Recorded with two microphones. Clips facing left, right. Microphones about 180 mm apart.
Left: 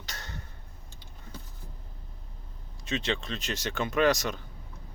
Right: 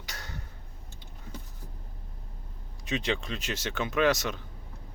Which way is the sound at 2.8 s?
15° right (ahead or behind).